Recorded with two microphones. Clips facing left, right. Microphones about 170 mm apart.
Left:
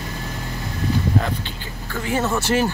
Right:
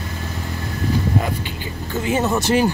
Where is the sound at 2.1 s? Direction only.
20° right (ahead or behind).